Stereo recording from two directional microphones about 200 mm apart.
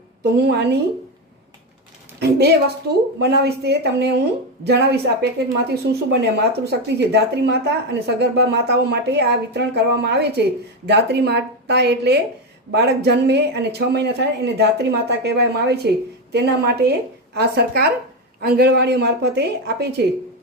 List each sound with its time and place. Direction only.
0.2 s a woman's voice: 55° right (ahead or behind)
2.1 s a woman's voice: 55° right (ahead or behind)